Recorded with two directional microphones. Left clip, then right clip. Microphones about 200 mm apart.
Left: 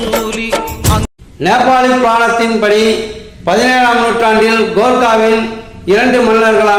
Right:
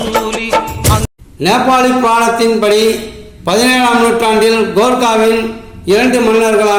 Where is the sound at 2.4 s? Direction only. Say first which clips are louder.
Even; 30° right (ahead or behind).